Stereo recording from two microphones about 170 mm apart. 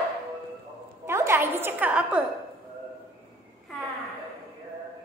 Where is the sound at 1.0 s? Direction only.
15° right (ahead or behind).